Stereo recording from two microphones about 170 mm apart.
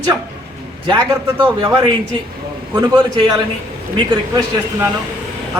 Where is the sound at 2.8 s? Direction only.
20° right (ahead or behind).